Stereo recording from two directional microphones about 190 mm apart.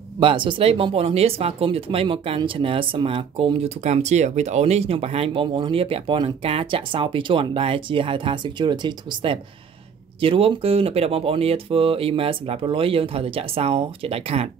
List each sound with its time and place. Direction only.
0.2 s speech: 25° right (ahead or behind)